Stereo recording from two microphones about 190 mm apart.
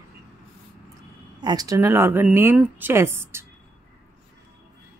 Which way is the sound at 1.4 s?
20° right (ahead or behind).